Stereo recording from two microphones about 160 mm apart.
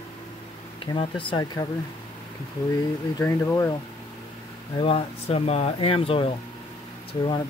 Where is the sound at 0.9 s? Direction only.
25° left (ahead or behind).